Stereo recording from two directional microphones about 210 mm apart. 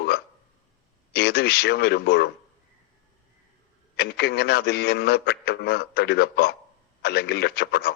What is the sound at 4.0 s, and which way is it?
A man's voice, 50° left (ahead or behind).